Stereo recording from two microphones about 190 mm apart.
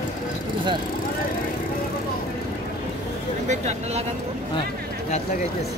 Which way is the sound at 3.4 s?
35° right (ahead or behind).